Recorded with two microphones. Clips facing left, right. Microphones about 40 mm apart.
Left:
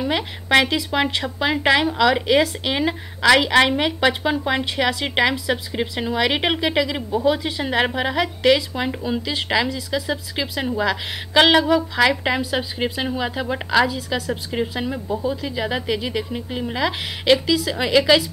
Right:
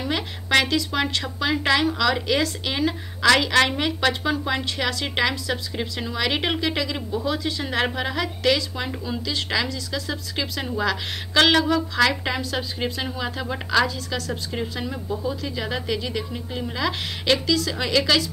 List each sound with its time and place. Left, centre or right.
0.0 s a woman's voice: centre